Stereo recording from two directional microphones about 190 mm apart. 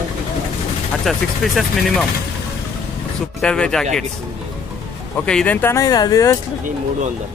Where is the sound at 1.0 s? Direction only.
Centre (ahead or behind).